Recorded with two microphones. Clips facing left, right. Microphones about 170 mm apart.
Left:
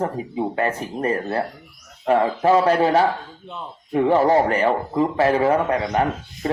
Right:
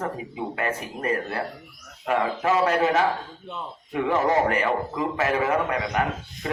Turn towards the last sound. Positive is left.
turn(degrees=35)  # may be behind; listen again after turning